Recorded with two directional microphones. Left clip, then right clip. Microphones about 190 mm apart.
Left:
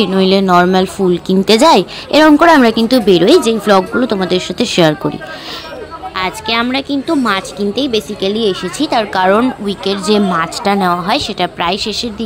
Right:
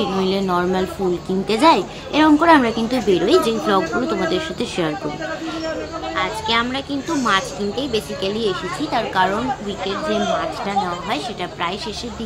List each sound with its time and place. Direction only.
0.0 s a woman's voice: 45° left (ahead or behind)
6.1 s a woman's voice: 40° left (ahead or behind)